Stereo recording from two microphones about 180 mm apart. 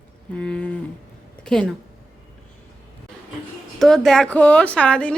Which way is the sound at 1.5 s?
5° left (ahead or behind).